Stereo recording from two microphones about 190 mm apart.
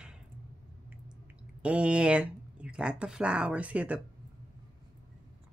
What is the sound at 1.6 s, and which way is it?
Speech, 5° right (ahead or behind).